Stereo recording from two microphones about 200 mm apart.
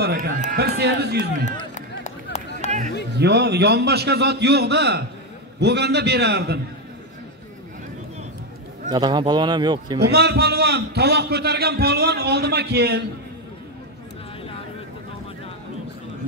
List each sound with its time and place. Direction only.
0.0 s run: 50° right (ahead or behind)
0.5 s a man's voice: 55° right (ahead or behind)
2.0 s a sound: 35° left (ahead or behind)
3.2 s a man's voice: 55° right (ahead or behind)
8.9 s speech: 20° right (ahead or behind)
9.9 s a man's voice: 55° right (ahead or behind)